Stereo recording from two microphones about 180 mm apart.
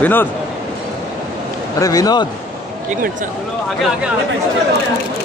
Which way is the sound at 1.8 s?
20° left (ahead or behind).